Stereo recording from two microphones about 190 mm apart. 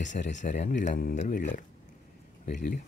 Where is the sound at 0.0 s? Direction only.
40° left (ahead or behind).